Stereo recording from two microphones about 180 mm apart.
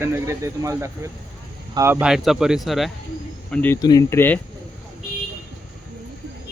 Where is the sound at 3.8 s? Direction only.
20° left (ahead or behind).